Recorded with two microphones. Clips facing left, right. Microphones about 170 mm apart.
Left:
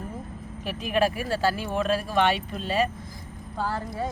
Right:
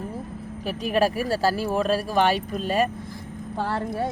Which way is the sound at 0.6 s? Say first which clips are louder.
Right 2 dB; 40° right (ahead or behind).